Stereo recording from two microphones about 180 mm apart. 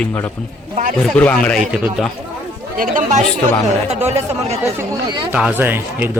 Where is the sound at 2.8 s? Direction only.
45° right (ahead or behind).